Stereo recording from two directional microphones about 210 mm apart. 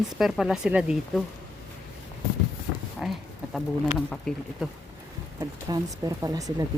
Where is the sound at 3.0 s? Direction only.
5° right (ahead or behind).